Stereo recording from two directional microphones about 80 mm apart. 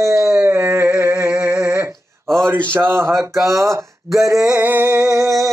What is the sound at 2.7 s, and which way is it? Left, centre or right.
Speech, right.